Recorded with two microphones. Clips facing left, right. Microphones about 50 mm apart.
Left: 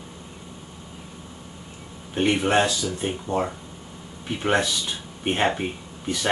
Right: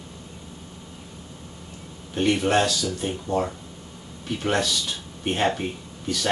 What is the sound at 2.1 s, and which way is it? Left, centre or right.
Speech, centre.